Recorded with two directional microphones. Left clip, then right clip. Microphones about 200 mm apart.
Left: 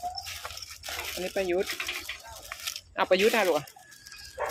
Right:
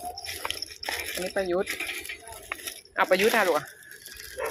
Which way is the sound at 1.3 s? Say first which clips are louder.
Right 1 dB; 10° left (ahead or behind).